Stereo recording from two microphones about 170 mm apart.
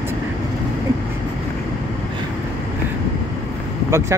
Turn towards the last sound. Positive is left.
turn(degrees=-15)  # may be behind; listen again after turning